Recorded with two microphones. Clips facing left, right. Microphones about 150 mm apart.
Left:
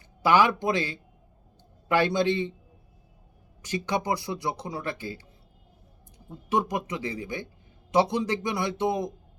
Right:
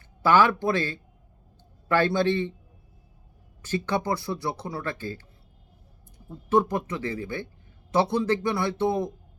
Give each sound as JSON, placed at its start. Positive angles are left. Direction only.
{"t": 0.2, "sound": "speech", "side_deg": 15}
{"t": 3.6, "sound": "speech", "side_deg": 15}
{"t": 6.2, "sound": "speech", "side_deg": 15}